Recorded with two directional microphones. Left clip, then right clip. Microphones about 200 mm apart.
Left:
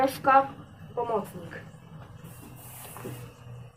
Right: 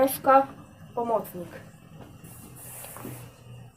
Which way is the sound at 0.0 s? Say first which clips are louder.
Right 1 dB; 55° right (ahead or behind).